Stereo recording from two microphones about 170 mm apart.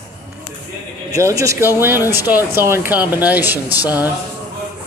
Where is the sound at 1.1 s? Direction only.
15° right (ahead or behind).